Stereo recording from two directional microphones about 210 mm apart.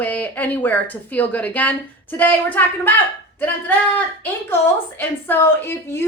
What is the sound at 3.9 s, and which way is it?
A woman's voice, 10° left (ahead or behind).